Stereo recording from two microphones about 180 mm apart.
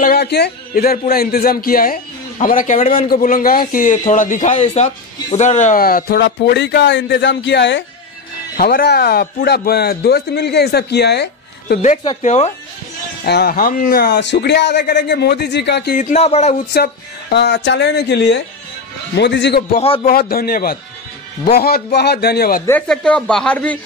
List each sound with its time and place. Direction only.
0.0 s speech: 60° left (ahead or behind)
8.5 s speech: 60° left (ahead or behind)
12.2 s a man's voice: 40° left (ahead or behind)
13.2 s a man's voice: 60° left (ahead or behind)
16.0 s a man's voice: 40° left (ahead or behind)
16.7 s a man's voice: 65° left (ahead or behind)
19.8 s a man's voice: 30° left (ahead or behind)
20.1 s speech: 55° left (ahead or behind)
22.7 s speech: 5° left (ahead or behind)